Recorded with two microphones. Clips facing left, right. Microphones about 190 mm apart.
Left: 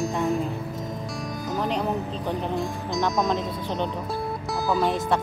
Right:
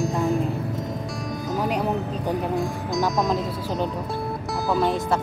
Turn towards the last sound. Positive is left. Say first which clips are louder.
# right 1 dB
turn(degrees=0)  # may be behind; listen again after turning